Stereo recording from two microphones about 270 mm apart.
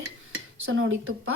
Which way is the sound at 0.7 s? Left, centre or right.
Right.